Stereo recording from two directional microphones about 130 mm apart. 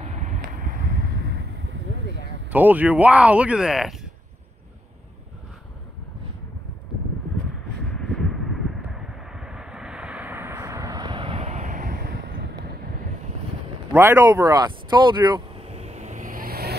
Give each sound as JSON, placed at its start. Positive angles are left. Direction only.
{"t": 0.0, "sound": "vehicle", "side_deg": -65}
{"t": 2.5, "sound": "speech", "side_deg": -15}
{"t": 7.9, "sound": "a sound", "side_deg": 5}
{"t": 8.9, "sound": "vehicle", "side_deg": -5}
{"t": 13.9, "sound": "speech", "side_deg": -20}
{"t": 15.6, "sound": "vehicle", "side_deg": -55}